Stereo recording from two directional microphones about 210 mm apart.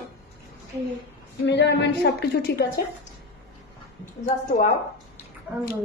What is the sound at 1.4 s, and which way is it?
A woman's voice, 55° left (ahead or behind).